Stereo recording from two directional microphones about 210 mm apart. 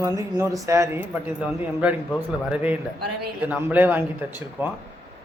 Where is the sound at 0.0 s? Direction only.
15° right (ahead or behind).